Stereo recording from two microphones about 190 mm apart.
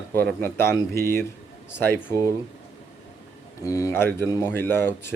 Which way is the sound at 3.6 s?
15° left (ahead or behind).